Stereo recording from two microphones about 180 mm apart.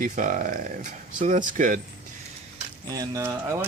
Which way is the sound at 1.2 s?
45° right (ahead or behind).